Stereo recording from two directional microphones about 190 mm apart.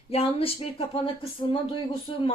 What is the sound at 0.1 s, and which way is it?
Speech, 30° left (ahead or behind).